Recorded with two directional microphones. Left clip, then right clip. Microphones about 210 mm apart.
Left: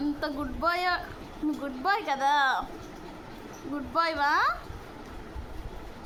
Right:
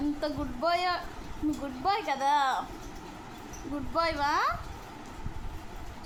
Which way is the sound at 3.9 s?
15° left (ahead or behind).